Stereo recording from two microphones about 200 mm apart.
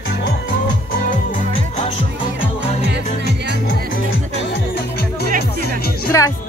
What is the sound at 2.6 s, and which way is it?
Music, 35° left (ahead or behind).